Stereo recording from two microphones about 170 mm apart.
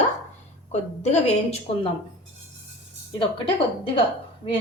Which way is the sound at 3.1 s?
25° left (ahead or behind).